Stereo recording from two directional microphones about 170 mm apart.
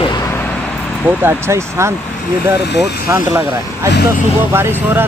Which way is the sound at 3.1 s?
15° right (ahead or behind).